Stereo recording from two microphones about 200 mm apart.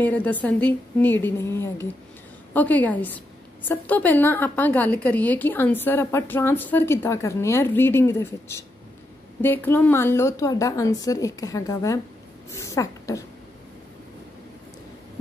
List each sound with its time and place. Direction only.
0.0 s a woman's voice: 10° left (ahead or behind)